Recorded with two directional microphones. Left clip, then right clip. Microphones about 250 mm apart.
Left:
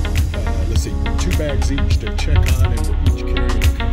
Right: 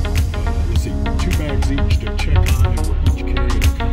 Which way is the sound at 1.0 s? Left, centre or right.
Centre.